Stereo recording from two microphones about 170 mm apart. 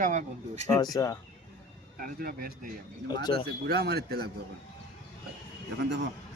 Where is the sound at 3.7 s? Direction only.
70° right (ahead or behind).